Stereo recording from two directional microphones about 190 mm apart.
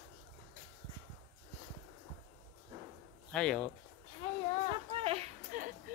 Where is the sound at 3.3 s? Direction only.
5° left (ahead or behind).